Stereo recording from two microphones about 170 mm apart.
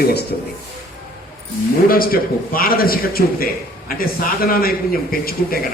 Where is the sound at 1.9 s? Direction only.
60° left (ahead or behind).